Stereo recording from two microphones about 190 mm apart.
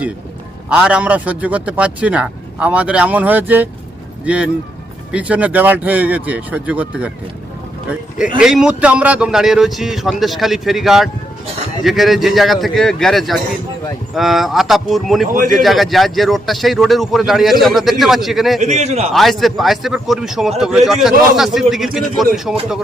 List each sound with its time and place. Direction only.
0.7 s a man's voice: 5° right (ahead or behind)
5.1 s a man's voice: 5° right (ahead or behind)
8.4 s a man's voice: 5° right (ahead or behind)
15.3 s a man's voice: 45° right (ahead or behind)
15.5 s a man's voice: centre (ahead or behind)
18.6 s a man's voice: 35° right (ahead or behind)
19.1 s a man's voice: centre (ahead or behind)